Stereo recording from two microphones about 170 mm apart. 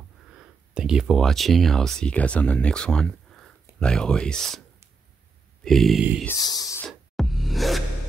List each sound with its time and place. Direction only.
0.3 s speech: 5° right (ahead or behind)
5.6 s a sound: centre (ahead or behind)
6.2 s speech: 20° left (ahead or behind)
6.9 s music: centre (ahead or behind)